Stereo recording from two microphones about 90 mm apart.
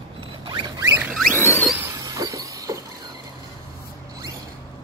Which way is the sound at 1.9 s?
40° right (ahead or behind).